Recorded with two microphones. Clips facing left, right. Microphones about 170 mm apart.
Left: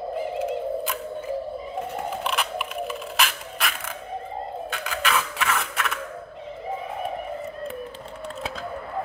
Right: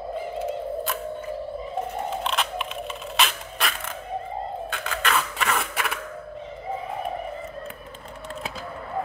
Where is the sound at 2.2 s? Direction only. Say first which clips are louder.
Even; 5° left (ahead or behind).